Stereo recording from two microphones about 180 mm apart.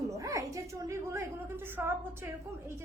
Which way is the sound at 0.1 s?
15° right (ahead or behind).